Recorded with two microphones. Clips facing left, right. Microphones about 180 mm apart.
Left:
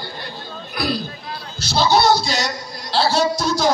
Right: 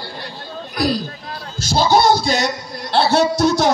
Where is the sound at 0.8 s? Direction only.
40° right (ahead or behind); by 3.7 s 60° right (ahead or behind).